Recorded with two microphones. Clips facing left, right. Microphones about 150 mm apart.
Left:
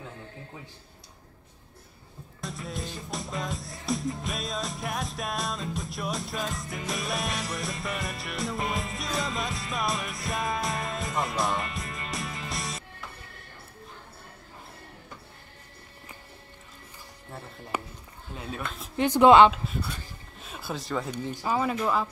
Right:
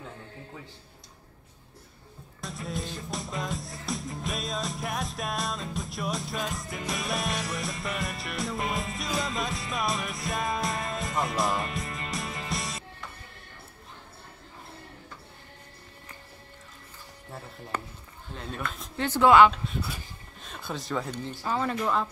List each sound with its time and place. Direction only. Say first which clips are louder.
2.4 s music: right 1 dB; centre (ahead or behind)
17.7 s speech: left 2 dB; 10° left (ahead or behind)
19.5 s speech: even; centre (ahead or behind)
21.1 s speech: left 2 dB; 15° left (ahead or behind)